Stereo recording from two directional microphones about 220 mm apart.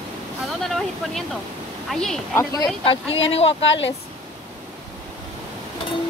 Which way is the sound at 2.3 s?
15° left (ahead or behind).